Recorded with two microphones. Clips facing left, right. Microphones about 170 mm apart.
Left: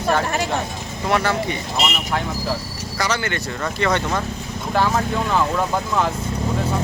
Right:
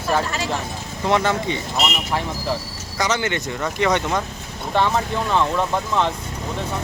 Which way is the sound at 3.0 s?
20° right (ahead or behind).